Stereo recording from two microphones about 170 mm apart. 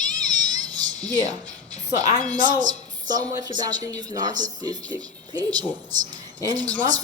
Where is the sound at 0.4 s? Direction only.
25° right (ahead or behind).